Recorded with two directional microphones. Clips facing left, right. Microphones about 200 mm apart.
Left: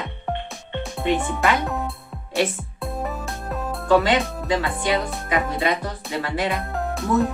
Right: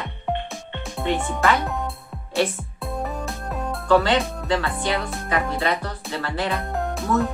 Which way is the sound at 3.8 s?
15° left (ahead or behind).